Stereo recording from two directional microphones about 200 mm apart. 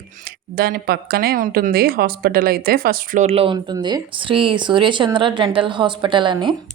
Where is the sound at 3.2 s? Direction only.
30° right (ahead or behind).